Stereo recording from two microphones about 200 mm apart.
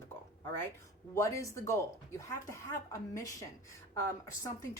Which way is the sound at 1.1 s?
15° left (ahead or behind).